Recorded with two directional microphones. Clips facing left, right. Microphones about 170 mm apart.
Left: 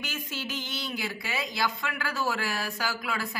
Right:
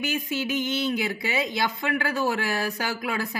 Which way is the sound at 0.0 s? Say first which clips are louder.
Right 9 dB; 15° right (ahead or behind).